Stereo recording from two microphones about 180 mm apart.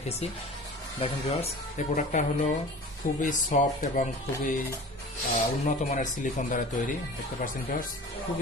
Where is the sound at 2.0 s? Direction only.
45° left (ahead or behind).